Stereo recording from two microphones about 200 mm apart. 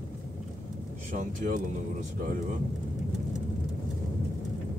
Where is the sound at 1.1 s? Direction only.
40° right (ahead or behind).